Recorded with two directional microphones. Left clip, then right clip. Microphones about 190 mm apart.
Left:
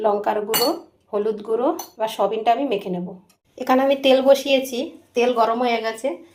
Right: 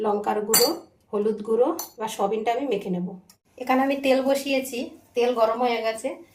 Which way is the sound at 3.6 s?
30° left (ahead or behind).